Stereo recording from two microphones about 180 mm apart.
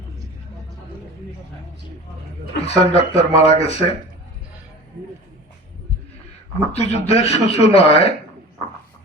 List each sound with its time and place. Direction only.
2.6 s speech: 35° left (ahead or behind)
6.7 s speech: 35° left (ahead or behind)